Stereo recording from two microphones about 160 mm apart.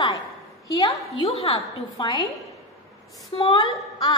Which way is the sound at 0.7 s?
20° left (ahead or behind).